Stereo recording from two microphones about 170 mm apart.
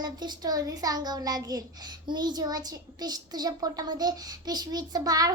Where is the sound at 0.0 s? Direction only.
25° right (ahead or behind).